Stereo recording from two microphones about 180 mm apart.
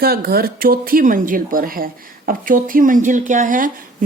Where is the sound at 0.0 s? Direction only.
60° right (ahead or behind).